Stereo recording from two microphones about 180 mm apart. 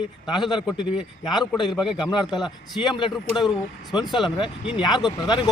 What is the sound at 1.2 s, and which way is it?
Speech, centre (ahead or behind).